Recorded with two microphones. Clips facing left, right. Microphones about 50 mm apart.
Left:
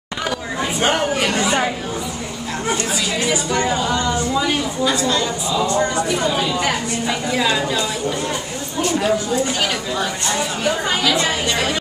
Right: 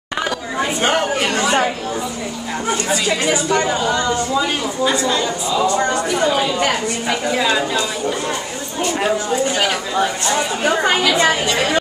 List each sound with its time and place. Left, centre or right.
0.7 s chatter: centre
3.6 s speech: centre
7.3 s speech: centre
9.6 s speech: centre
10.2 s speech: right
11.2 s a woman's voice: centre